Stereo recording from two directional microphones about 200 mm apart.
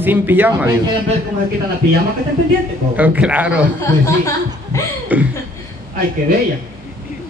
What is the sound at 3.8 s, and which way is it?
Speech, 15° left (ahead or behind).